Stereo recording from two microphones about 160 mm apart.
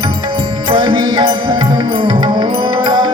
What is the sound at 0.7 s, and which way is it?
Music, 25° right (ahead or behind).